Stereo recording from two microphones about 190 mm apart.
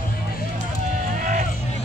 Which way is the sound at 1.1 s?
45° right (ahead or behind).